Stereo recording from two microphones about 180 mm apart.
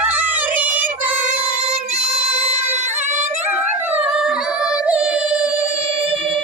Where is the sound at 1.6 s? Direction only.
35° right (ahead or behind).